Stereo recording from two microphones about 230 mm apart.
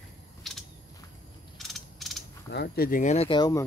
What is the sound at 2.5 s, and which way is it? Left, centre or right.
Speech, left.